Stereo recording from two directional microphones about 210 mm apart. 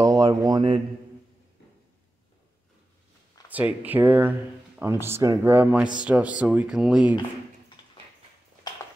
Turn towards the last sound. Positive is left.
turn(degrees=-5)  # may be behind; listen again after turning